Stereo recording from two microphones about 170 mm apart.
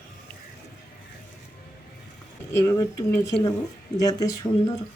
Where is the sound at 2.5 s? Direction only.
15° left (ahead or behind).